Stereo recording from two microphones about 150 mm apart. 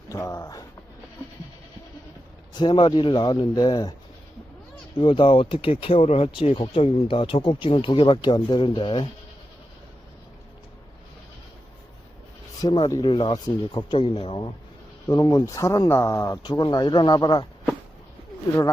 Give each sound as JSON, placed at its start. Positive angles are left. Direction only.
{"t": 0.1, "sound": "speech", "side_deg": 20}
{"t": 2.6, "sound": "speech", "side_deg": 30}
{"t": 4.9, "sound": "speech", "side_deg": 35}
{"t": 12.6, "sound": "speech", "side_deg": 30}